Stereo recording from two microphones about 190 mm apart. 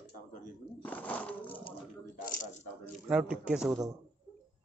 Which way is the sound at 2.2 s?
40° left (ahead or behind).